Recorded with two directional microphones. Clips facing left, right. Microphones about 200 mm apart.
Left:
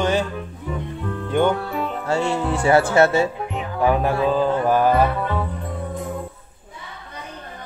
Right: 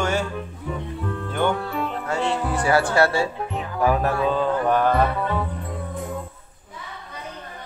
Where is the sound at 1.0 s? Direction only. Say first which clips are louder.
Left 5 dB; centre (ahead or behind).